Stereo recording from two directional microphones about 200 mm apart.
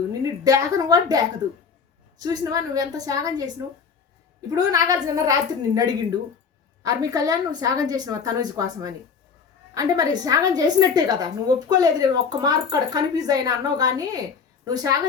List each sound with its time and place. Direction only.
0.1 s a woman's voice: 20° right (ahead or behind)